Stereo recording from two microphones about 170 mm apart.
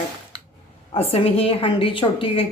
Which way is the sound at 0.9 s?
35° left (ahead or behind).